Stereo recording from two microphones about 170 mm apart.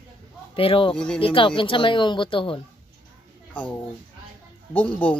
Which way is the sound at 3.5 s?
10° left (ahead or behind).